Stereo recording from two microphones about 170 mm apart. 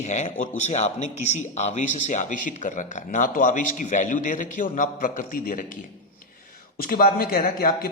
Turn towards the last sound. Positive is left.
turn(degrees=55)  # may be behind; listen again after turning